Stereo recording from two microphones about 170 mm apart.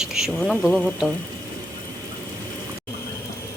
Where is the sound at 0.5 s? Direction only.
10° left (ahead or behind).